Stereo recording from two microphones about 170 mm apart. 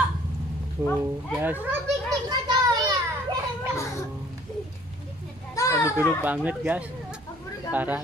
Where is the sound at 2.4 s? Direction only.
25° right (ahead or behind).